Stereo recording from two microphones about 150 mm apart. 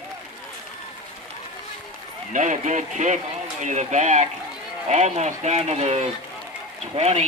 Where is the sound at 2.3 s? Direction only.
55° right (ahead or behind).